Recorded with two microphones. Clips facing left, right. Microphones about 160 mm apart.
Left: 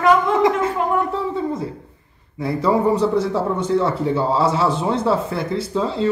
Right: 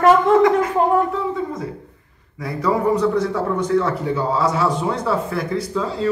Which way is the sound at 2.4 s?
30° left (ahead or behind).